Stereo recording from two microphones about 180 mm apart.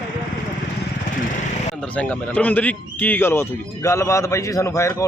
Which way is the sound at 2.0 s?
10° left (ahead or behind).